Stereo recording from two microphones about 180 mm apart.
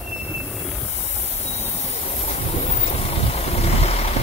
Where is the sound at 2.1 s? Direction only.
35° left (ahead or behind).